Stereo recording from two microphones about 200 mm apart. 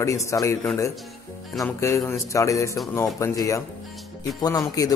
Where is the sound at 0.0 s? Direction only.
15° left (ahead or behind).